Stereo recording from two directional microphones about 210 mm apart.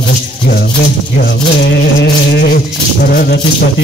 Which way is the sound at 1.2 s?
50° left (ahead or behind).